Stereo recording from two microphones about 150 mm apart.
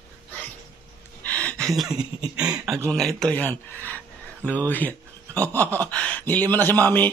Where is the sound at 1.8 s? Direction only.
5° right (ahead or behind).